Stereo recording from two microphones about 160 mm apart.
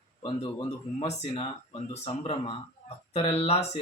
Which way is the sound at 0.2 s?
40° left (ahead or behind).